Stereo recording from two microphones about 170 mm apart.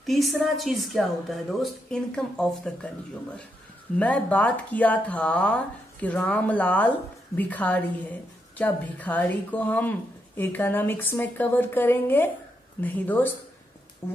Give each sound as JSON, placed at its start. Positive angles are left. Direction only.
{"t": 0.0, "sound": "a woman's voice", "side_deg": 0}
{"t": 4.0, "sound": "speech", "side_deg": 10}